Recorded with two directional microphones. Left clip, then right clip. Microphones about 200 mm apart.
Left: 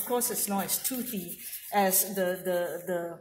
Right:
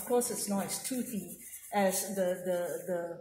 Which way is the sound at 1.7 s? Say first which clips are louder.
Left 4 dB; 25° left (ahead or behind).